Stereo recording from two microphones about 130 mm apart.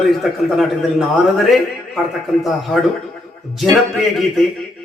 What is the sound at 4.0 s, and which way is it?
Speech, centre (ahead or behind).